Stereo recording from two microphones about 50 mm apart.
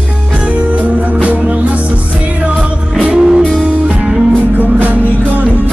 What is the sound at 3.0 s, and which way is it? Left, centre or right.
Music, centre.